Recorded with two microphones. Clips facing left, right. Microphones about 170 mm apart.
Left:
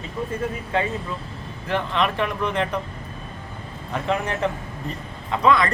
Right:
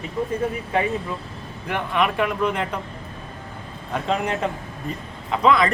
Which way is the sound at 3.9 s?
15° right (ahead or behind).